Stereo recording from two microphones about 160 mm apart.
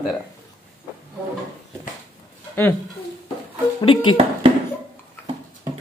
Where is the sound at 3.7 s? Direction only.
30° left (ahead or behind).